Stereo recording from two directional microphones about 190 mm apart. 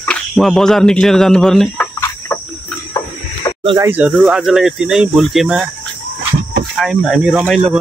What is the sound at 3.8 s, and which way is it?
Speech, 10° right (ahead or behind).